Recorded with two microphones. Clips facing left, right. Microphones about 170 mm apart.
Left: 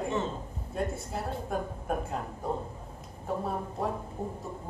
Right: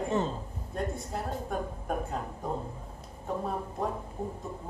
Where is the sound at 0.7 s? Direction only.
5° left (ahead or behind).